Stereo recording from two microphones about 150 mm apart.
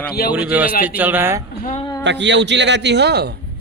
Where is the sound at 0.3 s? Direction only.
10° right (ahead or behind).